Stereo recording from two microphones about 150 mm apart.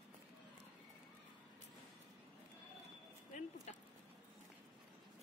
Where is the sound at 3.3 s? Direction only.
45° left (ahead or behind).